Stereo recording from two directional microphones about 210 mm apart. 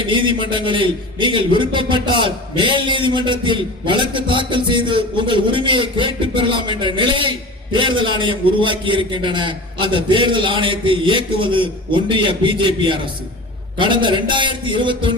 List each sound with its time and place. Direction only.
0.0 s a man's voice: 25° right (ahead or behind)